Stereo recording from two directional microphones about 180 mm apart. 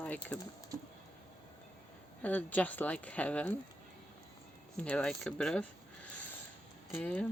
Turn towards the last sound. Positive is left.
turn(degrees=10)  # may be behind; listen again after turning